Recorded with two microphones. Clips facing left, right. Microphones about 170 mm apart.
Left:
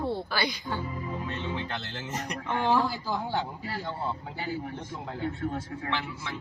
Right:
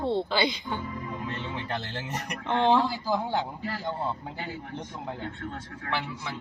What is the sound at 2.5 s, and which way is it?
Speech, 20° right (ahead or behind).